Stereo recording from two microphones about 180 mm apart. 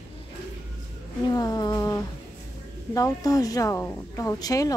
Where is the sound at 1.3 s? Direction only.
20° left (ahead or behind).